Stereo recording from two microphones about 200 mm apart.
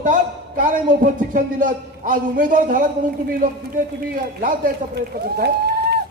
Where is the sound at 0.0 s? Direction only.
40° right (ahead or behind).